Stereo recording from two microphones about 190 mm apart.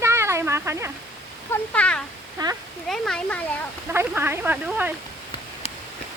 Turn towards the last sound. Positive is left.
turn(degrees=-10)  # may be behind; listen again after turning